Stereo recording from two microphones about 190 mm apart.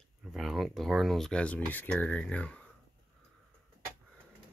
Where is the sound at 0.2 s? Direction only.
Centre (ahead or behind).